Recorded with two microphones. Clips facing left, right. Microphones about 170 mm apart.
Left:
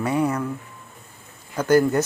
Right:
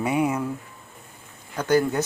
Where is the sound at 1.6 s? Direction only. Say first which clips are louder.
Left 3 dB; 5° left (ahead or behind).